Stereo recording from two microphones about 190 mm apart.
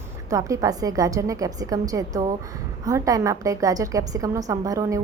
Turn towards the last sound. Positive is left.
turn(degrees=-15)  # may be behind; listen again after turning